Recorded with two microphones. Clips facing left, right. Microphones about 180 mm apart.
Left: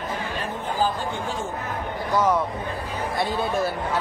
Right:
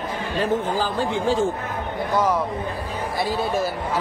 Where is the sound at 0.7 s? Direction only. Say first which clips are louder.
Right 2 dB; 90° right.